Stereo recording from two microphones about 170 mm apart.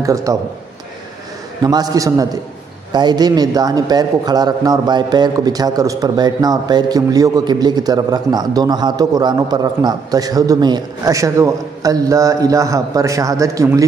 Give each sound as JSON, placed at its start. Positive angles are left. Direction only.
{"t": 0.0, "sound": "a man's voice", "side_deg": -20}
{"t": 1.6, "sound": "a man's voice", "side_deg": -20}